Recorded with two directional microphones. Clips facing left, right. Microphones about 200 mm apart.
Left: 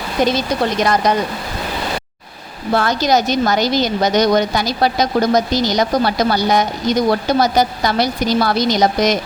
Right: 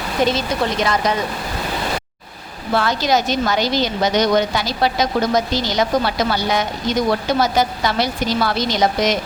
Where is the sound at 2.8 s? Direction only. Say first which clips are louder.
Left 2 dB; 40° left (ahead or behind).